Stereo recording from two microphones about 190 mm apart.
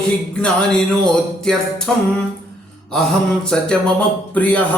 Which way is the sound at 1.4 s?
5° left (ahead or behind).